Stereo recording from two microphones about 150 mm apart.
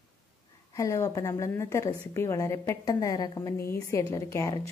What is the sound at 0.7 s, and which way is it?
A woman's voice, 20° left (ahead or behind).